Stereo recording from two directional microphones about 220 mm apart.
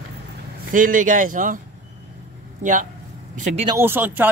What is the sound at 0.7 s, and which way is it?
Speech, 40° right (ahead or behind).